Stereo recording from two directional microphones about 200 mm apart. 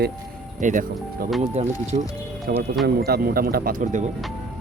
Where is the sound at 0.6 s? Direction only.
40° right (ahead or behind).